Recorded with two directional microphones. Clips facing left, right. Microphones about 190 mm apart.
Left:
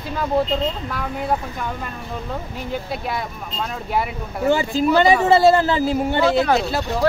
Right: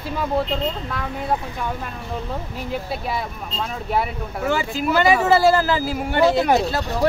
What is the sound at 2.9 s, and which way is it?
Speech, centre (ahead or behind).